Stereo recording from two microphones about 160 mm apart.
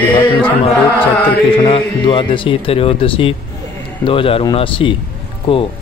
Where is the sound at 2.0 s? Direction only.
30° left (ahead or behind).